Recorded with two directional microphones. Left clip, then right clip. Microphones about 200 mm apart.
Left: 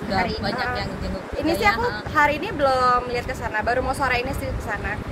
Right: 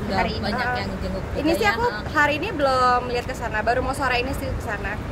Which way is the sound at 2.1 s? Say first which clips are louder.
Left 2 dB; 10° right (ahead or behind).